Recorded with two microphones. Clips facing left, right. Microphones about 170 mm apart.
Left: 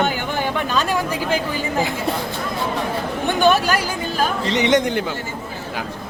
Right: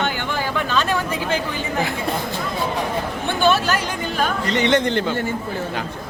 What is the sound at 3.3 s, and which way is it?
Chatter, 15° left (ahead or behind).